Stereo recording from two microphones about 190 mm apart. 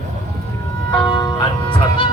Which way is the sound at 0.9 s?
25° left (ahead or behind).